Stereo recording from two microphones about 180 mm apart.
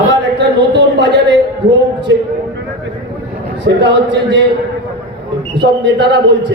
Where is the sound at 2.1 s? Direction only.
80° right.